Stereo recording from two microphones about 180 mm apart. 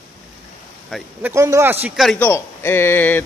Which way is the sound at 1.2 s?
15° right (ahead or behind).